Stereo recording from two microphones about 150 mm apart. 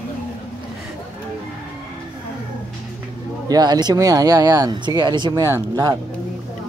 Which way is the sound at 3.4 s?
25° right (ahead or behind).